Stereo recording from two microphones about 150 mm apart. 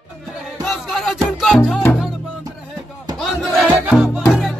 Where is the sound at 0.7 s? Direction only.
Centre (ahead or behind).